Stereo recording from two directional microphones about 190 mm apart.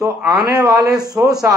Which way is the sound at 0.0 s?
15° right (ahead or behind).